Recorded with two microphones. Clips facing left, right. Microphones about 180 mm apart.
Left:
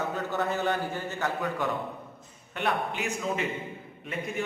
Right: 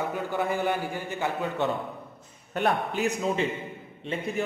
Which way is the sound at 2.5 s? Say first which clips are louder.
Right 3 dB; 40° right (ahead or behind).